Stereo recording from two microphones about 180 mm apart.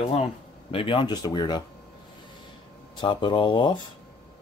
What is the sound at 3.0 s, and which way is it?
Speech, 25° left (ahead or behind).